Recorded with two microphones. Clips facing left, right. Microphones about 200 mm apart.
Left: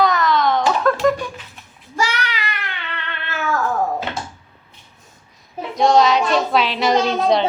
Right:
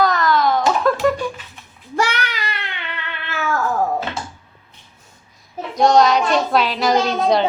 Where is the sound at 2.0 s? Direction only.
55° right (ahead or behind).